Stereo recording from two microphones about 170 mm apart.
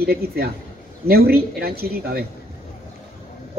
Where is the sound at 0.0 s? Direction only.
65° right (ahead or behind).